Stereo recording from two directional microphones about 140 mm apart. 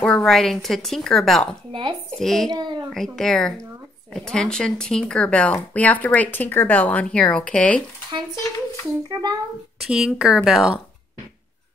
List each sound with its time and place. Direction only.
0.0 s a woman's voice: 5° left (ahead or behind)
1.7 s speech: 35° right (ahead or behind)
2.0 s a woman's voice: 5° left (ahead or behind)
2.5 s a child's voice: 30° right (ahead or behind)
2.9 s a woman's voice: 5° left (ahead or behind)
9.1 s a child's voice: 30° right (ahead or behind)
9.8 s a woman's voice: 5° right (ahead or behind)